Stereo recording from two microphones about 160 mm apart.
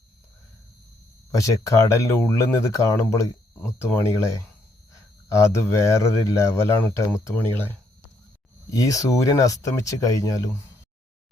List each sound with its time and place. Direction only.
1.3 s speech: 20° left (ahead or behind)
8.7 s speech: 20° left (ahead or behind)